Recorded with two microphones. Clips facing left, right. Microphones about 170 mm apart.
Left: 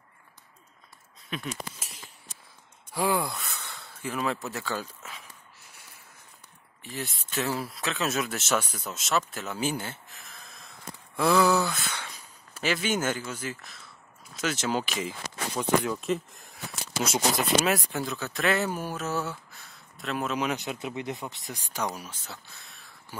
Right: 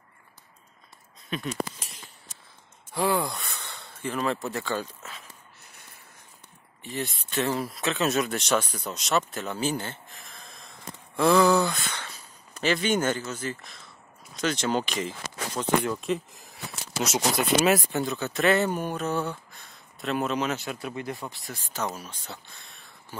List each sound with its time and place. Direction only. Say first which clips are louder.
2.9 s speech: right 1 dB; 10° left (ahead or behind)
3.5 s a sound: right 1 dB; centre (ahead or behind)
6.8 s speech: right 4 dB; centre (ahead or behind)
20.3 s speech: right 1 dB; 15° left (ahead or behind)
22.3 s speech: right 2 dB; centre (ahead or behind)